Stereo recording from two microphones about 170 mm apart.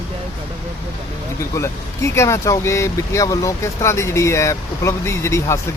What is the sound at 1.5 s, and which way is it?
Speech, 15° left (ahead or behind).